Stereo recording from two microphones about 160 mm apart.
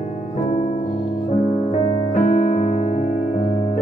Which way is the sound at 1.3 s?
45° left (ahead or behind).